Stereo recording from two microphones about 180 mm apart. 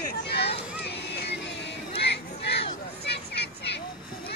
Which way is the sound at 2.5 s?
70° left (ahead or behind).